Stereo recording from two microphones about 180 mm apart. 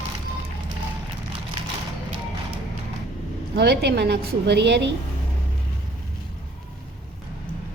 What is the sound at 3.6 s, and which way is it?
A woman's voice, 65° right (ahead or behind).